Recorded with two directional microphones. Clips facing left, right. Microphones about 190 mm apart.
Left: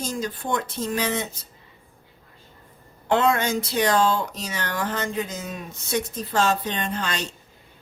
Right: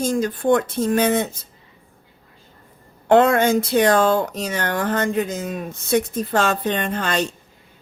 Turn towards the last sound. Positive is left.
turn(degrees=-55)  # may be behind; listen again after turning